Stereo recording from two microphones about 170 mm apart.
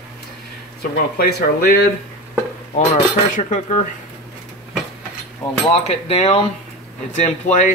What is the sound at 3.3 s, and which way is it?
Speech, 45° left (ahead or behind).